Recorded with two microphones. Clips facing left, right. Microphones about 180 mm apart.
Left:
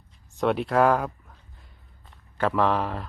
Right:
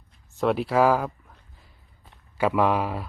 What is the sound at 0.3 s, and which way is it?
Speech, centre (ahead or behind).